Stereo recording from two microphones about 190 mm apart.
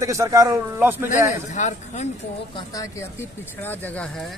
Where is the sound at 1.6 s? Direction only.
40° left (ahead or behind).